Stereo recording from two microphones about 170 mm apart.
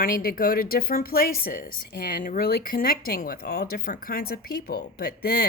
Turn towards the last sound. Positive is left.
turn(degrees=65)  # may be behind; listen again after turning